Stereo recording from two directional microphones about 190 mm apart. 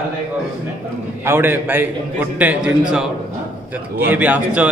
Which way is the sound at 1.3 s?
10° right (ahead or behind).